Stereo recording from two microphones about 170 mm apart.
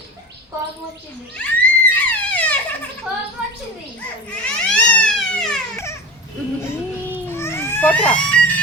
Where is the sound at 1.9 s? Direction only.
10° left (ahead or behind).